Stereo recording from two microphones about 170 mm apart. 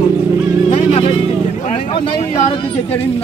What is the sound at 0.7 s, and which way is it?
Music, 35° left (ahead or behind).